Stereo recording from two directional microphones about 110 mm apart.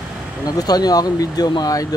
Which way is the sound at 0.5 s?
35° left (ahead or behind).